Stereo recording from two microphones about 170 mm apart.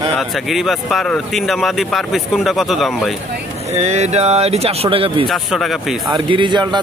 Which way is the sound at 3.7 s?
40° right (ahead or behind).